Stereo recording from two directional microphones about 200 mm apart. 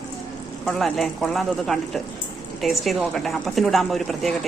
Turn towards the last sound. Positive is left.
turn(degrees=0)  # may be behind; listen again after turning